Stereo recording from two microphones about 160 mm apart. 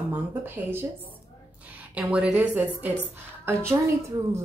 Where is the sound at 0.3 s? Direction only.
15° right (ahead or behind).